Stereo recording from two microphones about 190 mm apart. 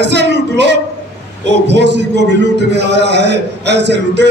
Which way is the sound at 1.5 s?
65° right (ahead or behind).